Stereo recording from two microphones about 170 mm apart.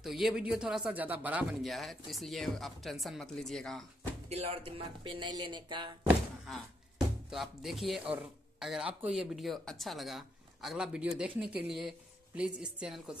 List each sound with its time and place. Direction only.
0.0 s a man's voice: centre (ahead or behind)
4.3 s speech: 35° right (ahead or behind)
6.0 s thunk: 5° right (ahead or behind)
7.2 s a man's voice: centre (ahead or behind)